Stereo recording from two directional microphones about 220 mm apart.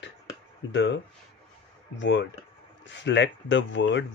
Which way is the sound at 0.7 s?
55° left (ahead or behind).